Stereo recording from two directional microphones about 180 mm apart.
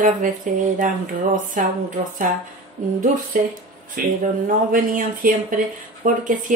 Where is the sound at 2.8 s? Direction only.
45° right (ahead or behind).